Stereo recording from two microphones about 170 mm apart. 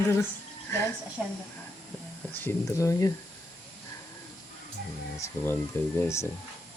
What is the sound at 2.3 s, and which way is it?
Speech, 15° left (ahead or behind).